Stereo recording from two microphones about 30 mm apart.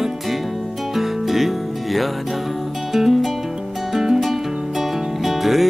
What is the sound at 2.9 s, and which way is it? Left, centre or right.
Music, centre.